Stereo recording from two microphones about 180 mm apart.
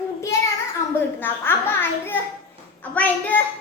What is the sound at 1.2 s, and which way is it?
A child's voice, 10° left (ahead or behind).